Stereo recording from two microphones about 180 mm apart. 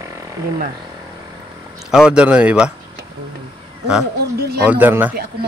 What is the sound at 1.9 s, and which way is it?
Speech, 5° right (ahead or behind).